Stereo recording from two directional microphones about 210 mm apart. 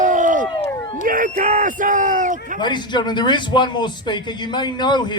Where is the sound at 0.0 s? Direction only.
35° right (ahead or behind).